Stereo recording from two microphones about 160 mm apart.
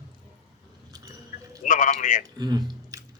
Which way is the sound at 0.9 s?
25° right (ahead or behind).